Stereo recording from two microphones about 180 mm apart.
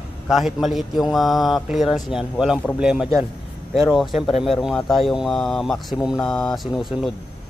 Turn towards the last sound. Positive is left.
turn(degrees=0)  # may be behind; listen again after turning